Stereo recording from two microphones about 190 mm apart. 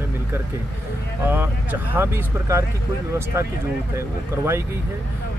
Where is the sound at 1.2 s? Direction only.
10° right (ahead or behind).